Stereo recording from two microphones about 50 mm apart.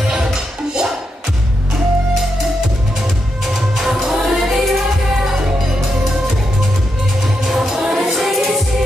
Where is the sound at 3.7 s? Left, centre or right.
Centre.